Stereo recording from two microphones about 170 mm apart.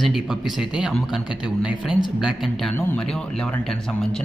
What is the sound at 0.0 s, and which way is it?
Speech, centre (ahead or behind).